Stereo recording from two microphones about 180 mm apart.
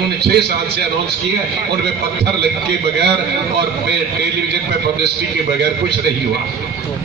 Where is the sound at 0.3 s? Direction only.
65° right (ahead or behind).